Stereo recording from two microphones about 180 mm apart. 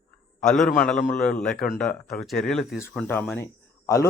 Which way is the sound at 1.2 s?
5° left (ahead or behind).